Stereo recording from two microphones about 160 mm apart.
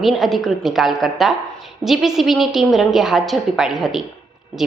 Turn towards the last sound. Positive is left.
turn(degrees=0)  # may be behind; listen again after turning